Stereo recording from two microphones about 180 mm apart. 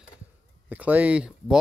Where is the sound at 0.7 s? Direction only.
10° right (ahead or behind).